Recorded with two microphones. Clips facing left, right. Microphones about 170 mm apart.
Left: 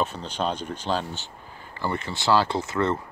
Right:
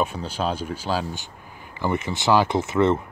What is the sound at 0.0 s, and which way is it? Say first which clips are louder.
Speech: right 2 dB; 10° right (ahead or behind).